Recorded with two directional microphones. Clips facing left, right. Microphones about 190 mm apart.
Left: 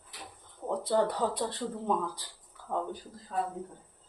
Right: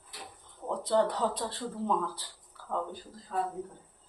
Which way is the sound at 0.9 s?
10° left (ahead or behind).